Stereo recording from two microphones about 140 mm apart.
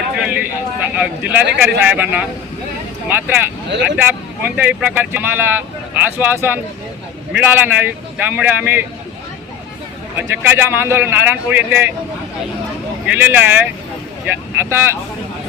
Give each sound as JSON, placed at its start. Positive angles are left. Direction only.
{"t": 0.9, "sound": "speech", "side_deg": -10}
{"t": 10.2, "sound": "speech", "side_deg": -15}
{"t": 13.1, "sound": "speech", "side_deg": -15}